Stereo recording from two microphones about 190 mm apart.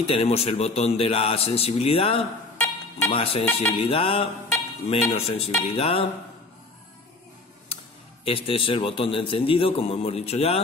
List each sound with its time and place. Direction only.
0.0 s a man's voice: 30° left (ahead or behind)
2.5 s music: 10° left (ahead or behind)
3.1 s a man's voice: 30° left (ahead or behind)
8.3 s a man's voice: 30° left (ahead or behind)